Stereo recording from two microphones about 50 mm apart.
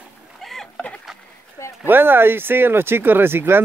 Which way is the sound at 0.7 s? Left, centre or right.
Left.